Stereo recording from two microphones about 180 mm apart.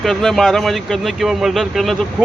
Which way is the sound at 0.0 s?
Centre (ahead or behind).